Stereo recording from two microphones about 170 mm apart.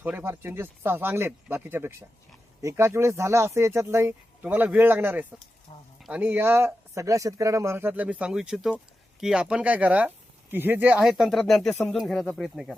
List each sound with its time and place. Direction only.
0.0 s speech: 10° right (ahead or behind)